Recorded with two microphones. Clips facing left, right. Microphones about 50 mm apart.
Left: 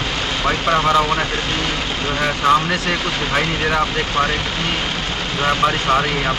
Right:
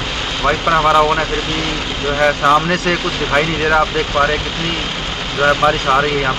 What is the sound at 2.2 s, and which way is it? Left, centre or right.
Speech, centre.